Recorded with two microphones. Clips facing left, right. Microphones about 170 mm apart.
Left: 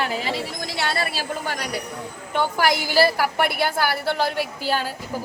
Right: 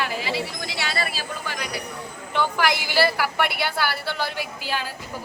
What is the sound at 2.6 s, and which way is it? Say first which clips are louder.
A woman's voice: left 4 dB; 40° left (ahead or behind).